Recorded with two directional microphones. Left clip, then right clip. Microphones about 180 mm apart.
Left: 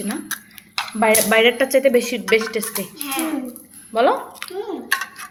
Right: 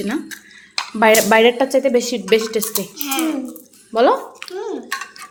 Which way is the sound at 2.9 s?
70° right (ahead or behind).